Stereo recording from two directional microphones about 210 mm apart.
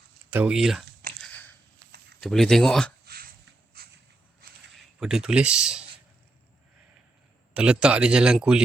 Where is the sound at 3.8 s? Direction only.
50° right (ahead or behind).